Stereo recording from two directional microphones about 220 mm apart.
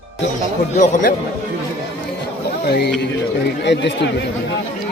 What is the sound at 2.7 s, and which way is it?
Speech, 50° left (ahead or behind).